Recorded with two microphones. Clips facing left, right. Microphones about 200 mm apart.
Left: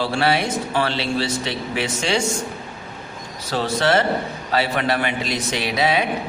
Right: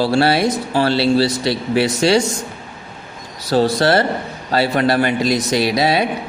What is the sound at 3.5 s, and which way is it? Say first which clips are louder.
A man's voice: right 5 dB; 35° right (ahead or behind).